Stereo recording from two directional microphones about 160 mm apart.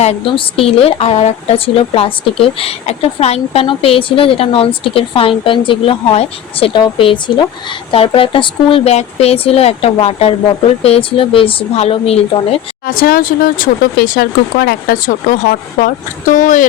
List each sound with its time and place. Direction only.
0.0 s speech: 35° left (ahead or behind)
12.9 s speech: 65° left (ahead or behind)